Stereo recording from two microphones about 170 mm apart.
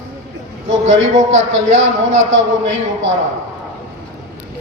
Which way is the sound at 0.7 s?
90° right.